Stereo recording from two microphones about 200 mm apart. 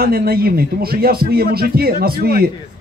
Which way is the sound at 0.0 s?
50° right (ahead or behind).